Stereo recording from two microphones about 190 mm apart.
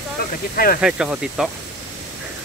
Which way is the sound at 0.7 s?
5° right (ahead or behind).